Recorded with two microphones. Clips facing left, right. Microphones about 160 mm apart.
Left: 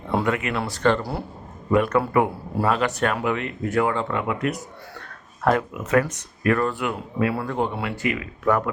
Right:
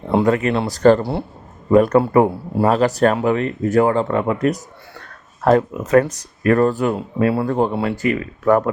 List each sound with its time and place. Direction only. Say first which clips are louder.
0.1 s speech: right 7 dB; 35° right (ahead or behind)